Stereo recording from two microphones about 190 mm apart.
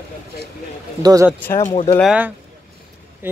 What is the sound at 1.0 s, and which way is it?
Speech, 20° right (ahead or behind).